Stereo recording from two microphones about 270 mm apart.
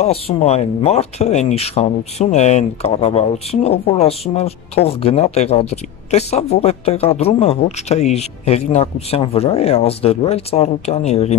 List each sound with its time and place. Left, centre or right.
0.0 s speech: left